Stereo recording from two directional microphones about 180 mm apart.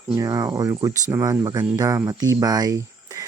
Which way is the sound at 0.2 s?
20° right (ahead or behind).